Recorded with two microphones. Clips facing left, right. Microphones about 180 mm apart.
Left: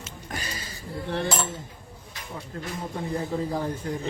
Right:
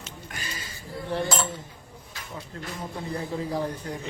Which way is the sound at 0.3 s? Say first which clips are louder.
Left 5 dB; 35° left (ahead or behind).